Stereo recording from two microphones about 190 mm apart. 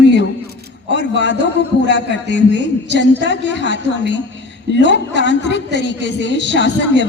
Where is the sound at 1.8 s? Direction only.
70° left (ahead or behind).